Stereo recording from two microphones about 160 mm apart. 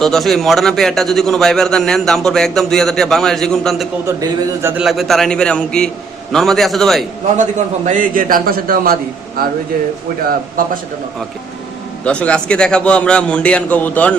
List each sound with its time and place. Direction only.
0.0 s a man's voice: centre (ahead or behind)
4.0 s a man's voice: 20° right (ahead or behind)
4.8 s a man's voice: centre (ahead or behind)
7.9 s a man's voice: 55° right (ahead or behind)
12.0 s a man's voice: 5° left (ahead or behind)